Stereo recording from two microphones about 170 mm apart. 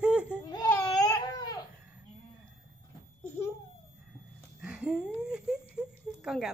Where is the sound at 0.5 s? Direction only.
20° left (ahead or behind).